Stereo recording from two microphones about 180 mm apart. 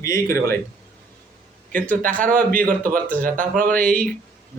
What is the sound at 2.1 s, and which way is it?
A man's voice, 50° right (ahead or behind).